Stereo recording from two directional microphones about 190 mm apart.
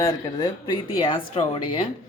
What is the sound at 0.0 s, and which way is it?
Speech, 20° left (ahead or behind).